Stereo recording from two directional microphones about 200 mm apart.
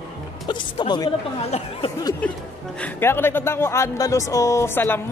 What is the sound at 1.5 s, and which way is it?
Speech, 35° left (ahead or behind).